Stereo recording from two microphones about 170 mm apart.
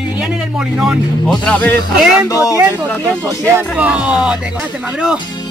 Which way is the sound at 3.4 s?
10° right (ahead or behind).